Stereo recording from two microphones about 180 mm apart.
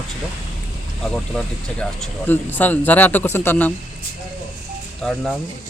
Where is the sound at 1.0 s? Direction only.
5° left (ahead or behind).